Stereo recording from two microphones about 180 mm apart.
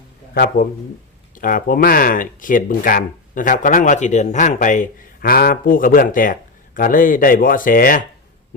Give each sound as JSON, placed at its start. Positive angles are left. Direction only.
{"t": 0.3, "sound": "speech", "side_deg": 55}